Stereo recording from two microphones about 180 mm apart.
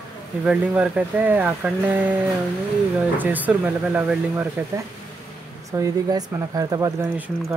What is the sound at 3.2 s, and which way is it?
Speech, 10° right (ahead or behind).